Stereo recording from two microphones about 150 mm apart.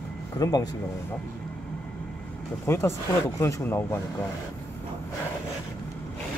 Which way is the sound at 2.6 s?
15° left (ahead or behind).